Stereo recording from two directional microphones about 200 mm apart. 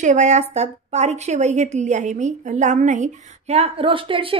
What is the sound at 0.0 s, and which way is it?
A woman's voice, 35° right (ahead or behind).